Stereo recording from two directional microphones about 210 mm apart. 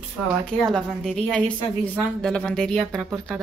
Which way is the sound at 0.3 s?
Centre (ahead or behind).